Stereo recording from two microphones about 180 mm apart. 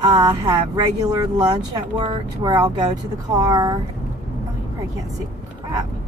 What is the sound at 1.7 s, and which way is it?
Speech, 25° right (ahead or behind).